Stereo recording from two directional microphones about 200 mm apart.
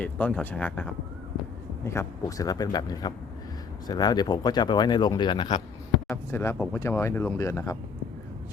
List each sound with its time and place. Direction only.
0.0 s speech: 5° left (ahead or behind); by 5.6 s 25° left (ahead or behind)
6.1 s speech: 10° left (ahead or behind)